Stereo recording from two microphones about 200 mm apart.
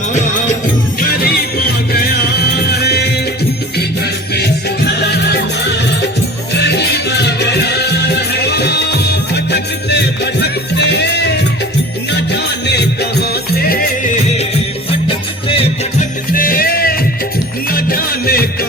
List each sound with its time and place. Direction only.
1.2 s music: 50° left (ahead or behind)
4.9 s music: 55° left (ahead or behind)
12.3 s music: 55° left (ahead or behind)
15.0 s music: 25° left (ahead or behind)
16.3 s music: 45° left (ahead or behind)